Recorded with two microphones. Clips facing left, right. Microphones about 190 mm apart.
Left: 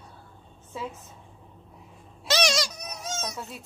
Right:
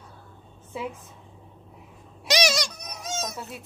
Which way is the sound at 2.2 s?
15° right (ahead or behind).